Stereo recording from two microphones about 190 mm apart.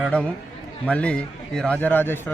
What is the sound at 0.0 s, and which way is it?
A man's voice, 5° left (ahead or behind).